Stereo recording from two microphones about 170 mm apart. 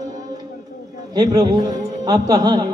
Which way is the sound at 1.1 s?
25° right (ahead or behind).